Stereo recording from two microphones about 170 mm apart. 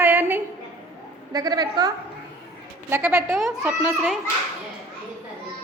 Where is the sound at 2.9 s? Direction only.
10° right (ahead or behind).